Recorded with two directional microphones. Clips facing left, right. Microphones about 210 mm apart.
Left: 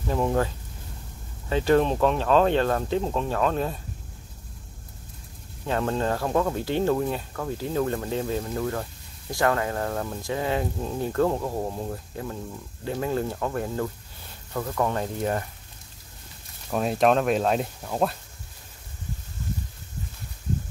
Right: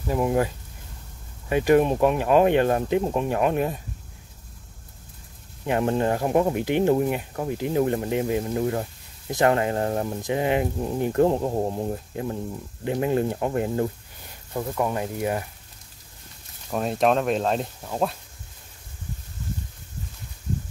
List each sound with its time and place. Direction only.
0.0 s speech: 10° right (ahead or behind)
1.5 s speech: 15° right (ahead or behind)
5.7 s speech: 15° right (ahead or behind)
16.7 s speech: centre (ahead or behind)